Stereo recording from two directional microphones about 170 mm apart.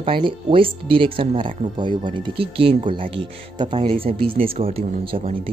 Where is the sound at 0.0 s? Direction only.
30° right (ahead or behind).